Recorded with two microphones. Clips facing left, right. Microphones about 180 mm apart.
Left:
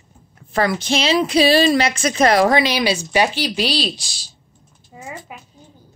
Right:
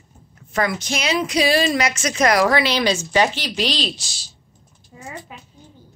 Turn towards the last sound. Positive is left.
turn(degrees=10)  # may be behind; listen again after turning